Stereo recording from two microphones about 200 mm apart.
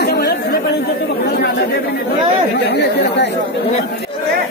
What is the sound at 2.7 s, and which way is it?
Speech, 60° left (ahead or behind).